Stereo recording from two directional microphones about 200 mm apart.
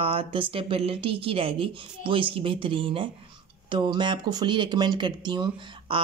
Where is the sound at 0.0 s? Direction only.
30° right (ahead or behind).